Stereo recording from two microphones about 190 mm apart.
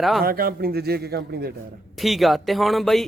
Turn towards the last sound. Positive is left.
turn(degrees=0)  # may be behind; listen again after turning